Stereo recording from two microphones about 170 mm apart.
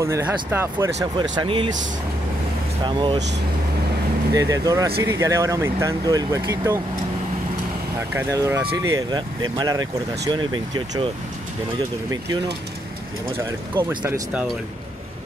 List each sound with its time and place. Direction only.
0.0 s speech: 15° right (ahead or behind)
1.4 s speech: 30° right (ahead or behind)
2.8 s speech: 30° right (ahead or behind)
4.3 s speech: 20° right (ahead or behind)
8.1 s speech: 15° right (ahead or behind)
13.4 s speech: 15° right (ahead or behind)